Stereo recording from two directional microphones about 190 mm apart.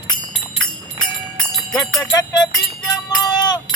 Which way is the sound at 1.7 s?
20° left (ahead or behind).